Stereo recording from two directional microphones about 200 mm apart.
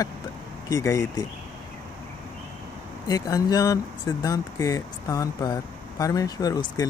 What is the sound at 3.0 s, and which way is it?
Speech, 15° left (ahead or behind).